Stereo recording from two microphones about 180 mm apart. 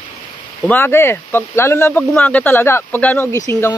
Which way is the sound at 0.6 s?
10° left (ahead or behind).